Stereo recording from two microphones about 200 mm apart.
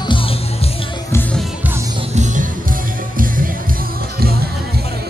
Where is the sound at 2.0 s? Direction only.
35° right (ahead or behind).